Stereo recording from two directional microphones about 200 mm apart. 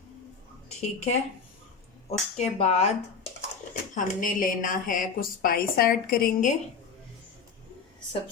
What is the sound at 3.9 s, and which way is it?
A woman's voice, 40° left (ahead or behind).